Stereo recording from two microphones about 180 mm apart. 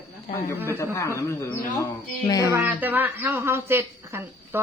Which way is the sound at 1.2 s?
15° left (ahead or behind).